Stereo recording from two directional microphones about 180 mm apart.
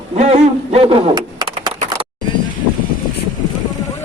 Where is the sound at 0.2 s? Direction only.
35° right (ahead or behind).